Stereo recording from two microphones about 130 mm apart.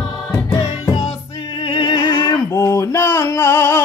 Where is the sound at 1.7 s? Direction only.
35° left (ahead or behind).